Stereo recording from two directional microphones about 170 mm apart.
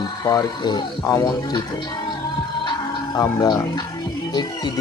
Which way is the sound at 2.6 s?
20° left (ahead or behind).